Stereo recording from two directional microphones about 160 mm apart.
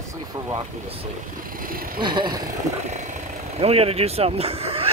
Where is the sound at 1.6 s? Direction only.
65° right (ahead or behind).